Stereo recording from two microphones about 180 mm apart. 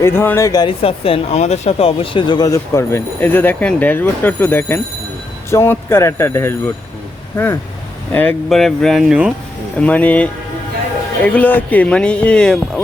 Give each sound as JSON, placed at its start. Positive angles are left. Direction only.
{"t": 0.0, "sound": "speech", "side_deg": 15}
{"t": 0.8, "sound": "speech", "side_deg": 30}
{"t": 9.7, "sound": "speech", "side_deg": 10}